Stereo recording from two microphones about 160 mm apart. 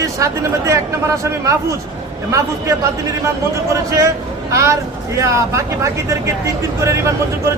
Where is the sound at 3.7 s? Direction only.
20° right (ahead or behind).